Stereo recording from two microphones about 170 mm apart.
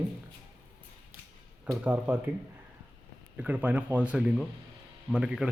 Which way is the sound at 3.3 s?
10° right (ahead or behind).